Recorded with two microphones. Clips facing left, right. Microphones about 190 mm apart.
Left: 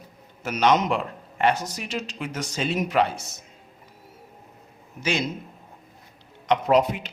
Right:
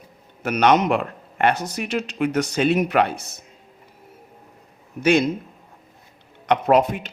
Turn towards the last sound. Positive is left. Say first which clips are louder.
# right 3 dB
turn(degrees=-50)  # may be behind; listen again after turning